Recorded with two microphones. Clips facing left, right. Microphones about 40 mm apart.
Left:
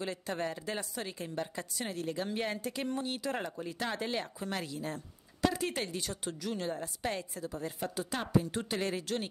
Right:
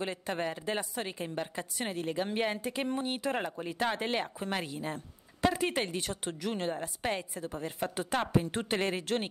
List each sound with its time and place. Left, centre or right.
0.0 s a woman's voice: right